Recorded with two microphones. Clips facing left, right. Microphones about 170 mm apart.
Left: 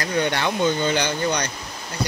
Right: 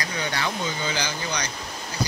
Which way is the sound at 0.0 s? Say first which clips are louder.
Left 6 dB; 60° left (ahead or behind).